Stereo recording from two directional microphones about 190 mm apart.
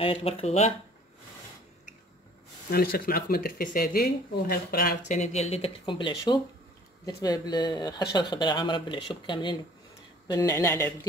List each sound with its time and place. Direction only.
0.0 s speech: 30° left (ahead or behind)
2.7 s speech: 50° left (ahead or behind)
5.0 s speech: 35° left (ahead or behind); by 11.1 s 10° left (ahead or behind)